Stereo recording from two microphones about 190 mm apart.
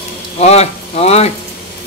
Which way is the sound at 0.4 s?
35° left (ahead or behind).